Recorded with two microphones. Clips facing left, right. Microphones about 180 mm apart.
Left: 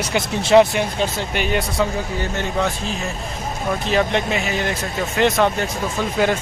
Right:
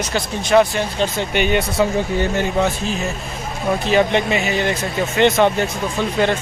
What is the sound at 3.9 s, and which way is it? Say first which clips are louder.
Speech: right 3 dB; centre (ahead or behind).